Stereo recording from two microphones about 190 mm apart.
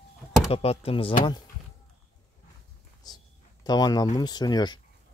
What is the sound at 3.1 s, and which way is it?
Speech, 20° left (ahead or behind).